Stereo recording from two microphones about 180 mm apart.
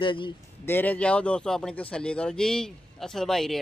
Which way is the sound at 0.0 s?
30° left (ahead or behind).